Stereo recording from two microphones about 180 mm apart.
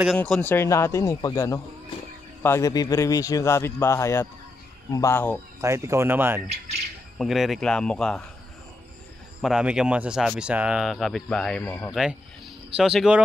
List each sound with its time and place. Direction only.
0.2 s a man's voice: 10° left (ahead or behind)
5.6 s speech: 15° right (ahead or behind)
7.2 s speech: centre (ahead or behind)
9.4 s a man's voice: 5° right (ahead or behind)
11.9 s speech: 5° right (ahead or behind)